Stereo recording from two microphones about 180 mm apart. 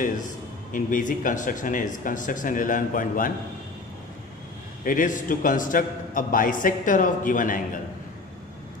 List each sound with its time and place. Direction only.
0.7 s a man's voice: 50° left (ahead or behind)
4.8 s a man's voice: 50° left (ahead or behind)